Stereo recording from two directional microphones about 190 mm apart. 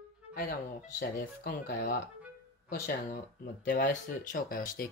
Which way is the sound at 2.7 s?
45° left (ahead or behind).